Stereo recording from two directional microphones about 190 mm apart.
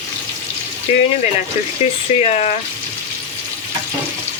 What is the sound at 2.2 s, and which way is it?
Speech, 35° left (ahead or behind).